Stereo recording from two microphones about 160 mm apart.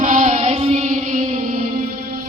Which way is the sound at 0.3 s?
35° right (ahead or behind).